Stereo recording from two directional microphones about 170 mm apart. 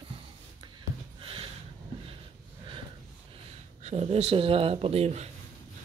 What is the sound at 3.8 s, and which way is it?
Speech, 40° right (ahead or behind).